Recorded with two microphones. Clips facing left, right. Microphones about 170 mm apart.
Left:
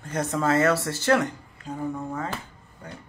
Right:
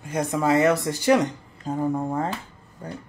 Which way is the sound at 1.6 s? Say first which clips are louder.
Right 6 dB; 50° right (ahead or behind).